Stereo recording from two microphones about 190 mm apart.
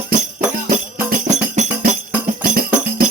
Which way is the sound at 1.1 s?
40° right (ahead or behind).